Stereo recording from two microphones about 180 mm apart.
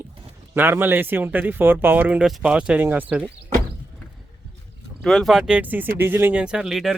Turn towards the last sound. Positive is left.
turn(degrees=-5)  # may be behind; listen again after turning